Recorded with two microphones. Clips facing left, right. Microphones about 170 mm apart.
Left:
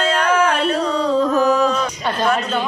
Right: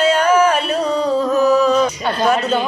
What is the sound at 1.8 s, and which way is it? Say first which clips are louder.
Speech: right 4 dB; 10° right (ahead or behind).